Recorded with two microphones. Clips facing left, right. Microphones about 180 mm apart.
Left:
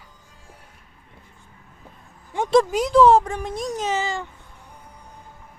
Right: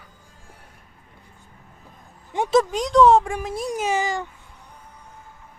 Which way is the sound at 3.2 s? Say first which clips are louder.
Even; 10° right (ahead or behind).